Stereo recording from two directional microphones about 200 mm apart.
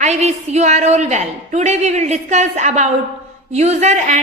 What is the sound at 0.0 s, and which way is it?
A woman's voice, 35° right (ahead or behind).